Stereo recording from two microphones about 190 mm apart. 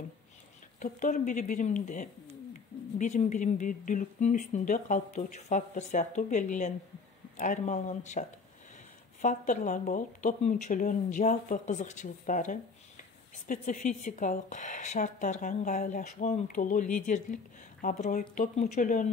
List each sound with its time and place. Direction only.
0.7 s a woman's voice: 45° left (ahead or behind)